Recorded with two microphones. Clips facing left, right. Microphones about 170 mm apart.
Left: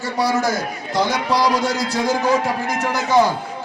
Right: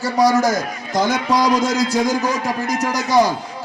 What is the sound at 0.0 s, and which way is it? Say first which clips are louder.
A man's voice: right 4 dB; 40° right (ahead or behind).